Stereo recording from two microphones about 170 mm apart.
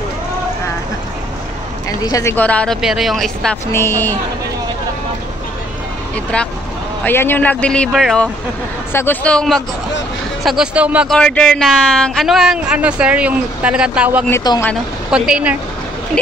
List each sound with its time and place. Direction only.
2.0 s speech: 20° left (ahead or behind); by 3.5 s centre (ahead or behind)
3.7 s a man's voice: 15° left (ahead or behind)
6.3 s a man's voice: 5° left (ahead or behind)
8.9 s a man's voice: 10° left (ahead or behind); by 11.1 s 5° right (ahead or behind)
11.1 s speech: 5° left (ahead or behind)
14.5 s speech: 25° left (ahead or behind)
15.0 s speech: 5° right (ahead or behind)